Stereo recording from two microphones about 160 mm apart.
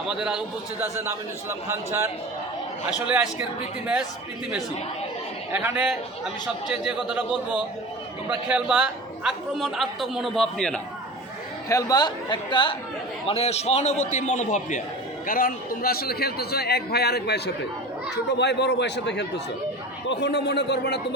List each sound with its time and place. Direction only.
0.1 s a man's voice: 5° right (ahead or behind)
0.8 s a man's voice: 15° right (ahead or behind)
5.5 s a man's voice: 10° right (ahead or behind); by 10.8 s 5° left (ahead or behind)
11.7 s a man's voice: 20° left (ahead or behind); by 14.8 s 50° left (ahead or behind)
15.3 s a man's voice: 65° left (ahead or behind); by 21.0 s 90° left